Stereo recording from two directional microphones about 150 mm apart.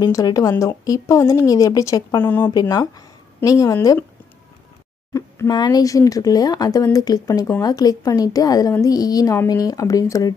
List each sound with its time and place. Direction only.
0.0 s speech: 25° left (ahead or behind)
2.5 s speech: 25° left (ahead or behind)
5.1 s speech: 25° left (ahead or behind)